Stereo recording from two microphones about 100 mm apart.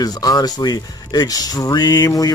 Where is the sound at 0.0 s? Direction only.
40° left (ahead or behind).